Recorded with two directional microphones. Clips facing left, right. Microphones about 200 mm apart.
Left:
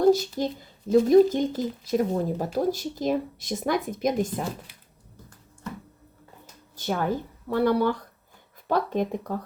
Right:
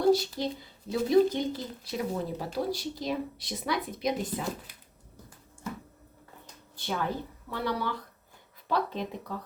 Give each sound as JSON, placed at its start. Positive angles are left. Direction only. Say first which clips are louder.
{"t": 0.1, "sound": "speech", "louder": "left 3 dB", "side_deg": 45}
{"t": 6.7, "sound": "speech", "louder": "left 5 dB", "side_deg": 45}